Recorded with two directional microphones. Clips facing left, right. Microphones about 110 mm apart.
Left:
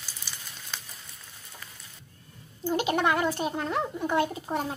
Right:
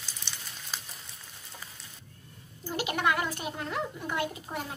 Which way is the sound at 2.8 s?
30° left (ahead or behind).